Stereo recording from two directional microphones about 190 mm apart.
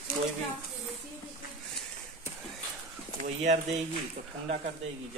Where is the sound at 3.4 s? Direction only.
35° right (ahead or behind).